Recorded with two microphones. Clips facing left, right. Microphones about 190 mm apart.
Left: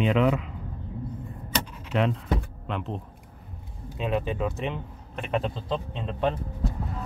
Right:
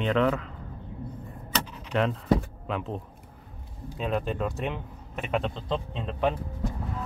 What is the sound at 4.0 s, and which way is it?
Speech, centre (ahead or behind).